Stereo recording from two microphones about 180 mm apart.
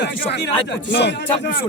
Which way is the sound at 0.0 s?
70° left (ahead or behind).